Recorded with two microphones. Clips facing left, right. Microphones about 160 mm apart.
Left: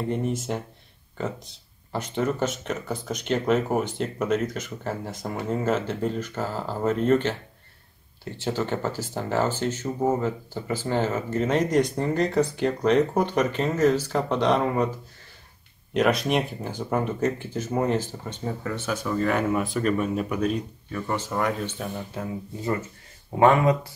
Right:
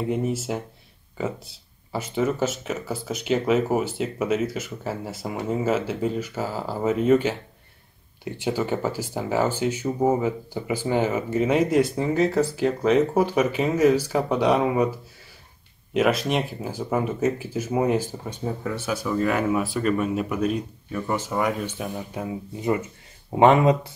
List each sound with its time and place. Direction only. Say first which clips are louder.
0.1 s speech: right 2 dB; 5° right (ahead or behind); by 23.8 s 20° right (ahead or behind)